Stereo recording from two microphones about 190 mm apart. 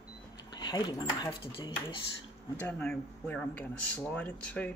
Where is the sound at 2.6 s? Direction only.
5° left (ahead or behind).